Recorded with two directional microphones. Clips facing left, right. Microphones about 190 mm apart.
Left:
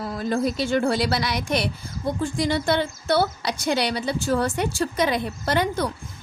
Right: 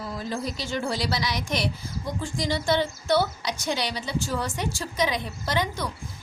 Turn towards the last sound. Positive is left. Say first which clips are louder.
# left 5 dB
turn(degrees=55)  # may be behind; listen again after turning